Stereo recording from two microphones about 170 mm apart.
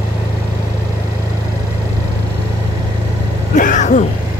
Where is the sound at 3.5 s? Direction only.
45° left (ahead or behind).